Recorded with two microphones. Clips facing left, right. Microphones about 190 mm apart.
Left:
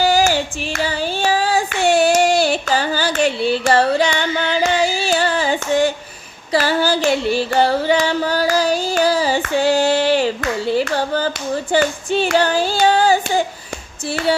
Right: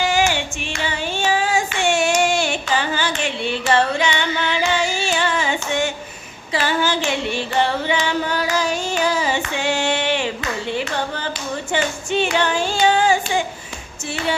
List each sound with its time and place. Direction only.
0.0 s singing: 35° left (ahead or behind)
0.8 s a sound: 35° left (ahead or behind)
6.5 s carnatic music: 40° left (ahead or behind)
14.1 s female singing: 35° left (ahead or behind)